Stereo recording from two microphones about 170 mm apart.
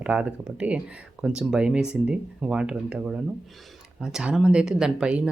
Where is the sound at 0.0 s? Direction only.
5° right (ahead or behind).